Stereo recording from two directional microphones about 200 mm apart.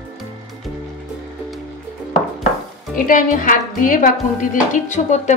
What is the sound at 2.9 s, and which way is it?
A woman's voice, 40° left (ahead or behind).